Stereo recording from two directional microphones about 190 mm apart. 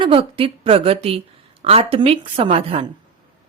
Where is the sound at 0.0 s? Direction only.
30° right (ahead or behind).